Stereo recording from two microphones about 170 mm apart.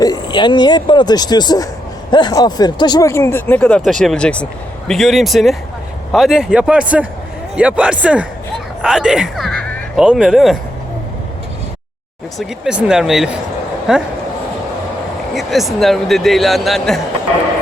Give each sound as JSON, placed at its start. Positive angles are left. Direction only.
{"t": 0.0, "sound": "a man's voice", "side_deg": 25}
{"t": 12.4, "sound": "a man's voice", "side_deg": -5}
{"t": 15.4, "sound": "a man's voice", "side_deg": 0}